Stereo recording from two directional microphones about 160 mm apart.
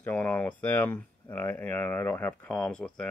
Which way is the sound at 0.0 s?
10° left (ahead or behind).